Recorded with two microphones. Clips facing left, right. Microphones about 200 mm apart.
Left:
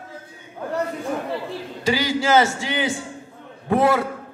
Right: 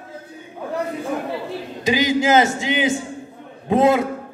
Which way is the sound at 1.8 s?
20° right (ahead or behind).